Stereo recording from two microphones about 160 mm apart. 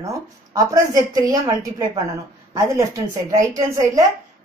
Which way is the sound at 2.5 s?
20° right (ahead or behind).